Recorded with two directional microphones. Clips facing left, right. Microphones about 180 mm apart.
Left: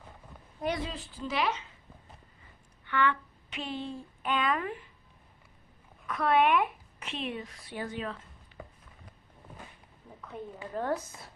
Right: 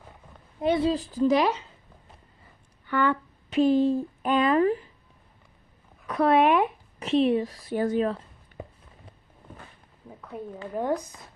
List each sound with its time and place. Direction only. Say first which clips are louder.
0.6 s a woman's voice: right 10 dB; 30° right (ahead or behind)
2.8 s speech: right 4 dB; 40° right (ahead or behind)
6.1 s a woman's voice: right 5 dB; 35° right (ahead or behind)
8.6 s a sound: right 6 dB; 20° right (ahead or behind)
10.3 s a woman's voice: right 4 dB; 5° right (ahead or behind)
10.8 s a woman's voice: right 5 dB; 15° right (ahead or behind)